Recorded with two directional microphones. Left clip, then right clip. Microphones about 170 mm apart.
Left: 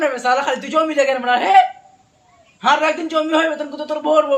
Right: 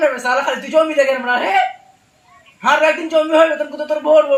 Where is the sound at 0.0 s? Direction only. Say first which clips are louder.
Right 1 dB; 30° left (ahead or behind).